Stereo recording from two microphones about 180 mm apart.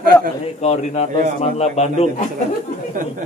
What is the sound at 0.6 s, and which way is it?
A man's voice, 40° left (ahead or behind).